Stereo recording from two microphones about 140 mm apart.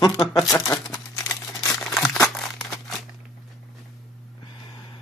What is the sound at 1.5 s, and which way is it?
Crumpling, 20° left (ahead or behind).